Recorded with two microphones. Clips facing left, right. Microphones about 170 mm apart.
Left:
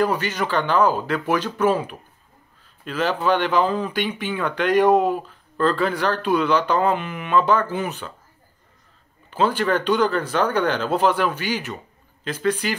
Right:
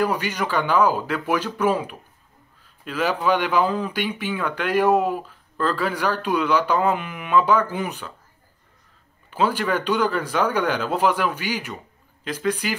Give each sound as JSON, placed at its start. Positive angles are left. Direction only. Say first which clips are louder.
{"t": 0.0, "sound": "speech", "louder": "left 1 dB", "side_deg": -10}
{"t": 9.3, "sound": "speech", "louder": "left 2 dB", "side_deg": -10}